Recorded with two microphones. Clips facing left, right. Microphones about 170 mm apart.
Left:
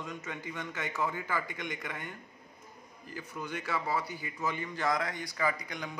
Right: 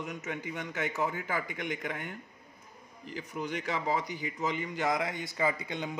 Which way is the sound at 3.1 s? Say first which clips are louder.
Right 3 dB; 15° right (ahead or behind).